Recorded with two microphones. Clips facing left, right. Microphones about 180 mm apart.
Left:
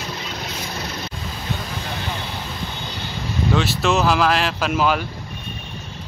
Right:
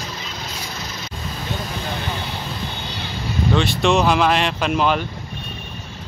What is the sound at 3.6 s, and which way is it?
Speech, 5° left (ahead or behind).